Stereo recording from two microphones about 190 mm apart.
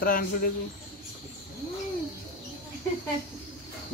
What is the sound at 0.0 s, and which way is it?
Speech, 50° left (ahead or behind).